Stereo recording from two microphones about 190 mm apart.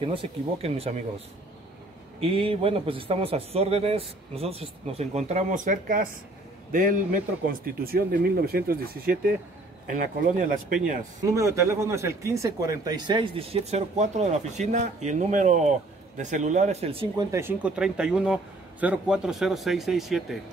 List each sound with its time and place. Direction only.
0.0 s speech: 30° right (ahead or behind)
2.1 s a man's voice: 30° right (ahead or behind)
11.2 s speech: 15° right (ahead or behind)
17.3 s speech: 10° right (ahead or behind)